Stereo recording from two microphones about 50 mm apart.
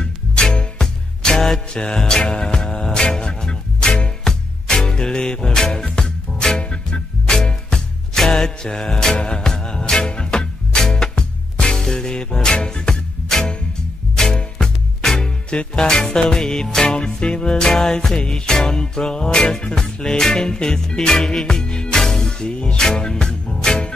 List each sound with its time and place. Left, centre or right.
0.0 s music: centre
1.8 s music: left
6.6 s music: centre